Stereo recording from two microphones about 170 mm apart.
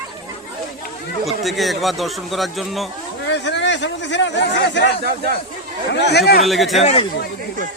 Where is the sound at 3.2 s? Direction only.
90° left.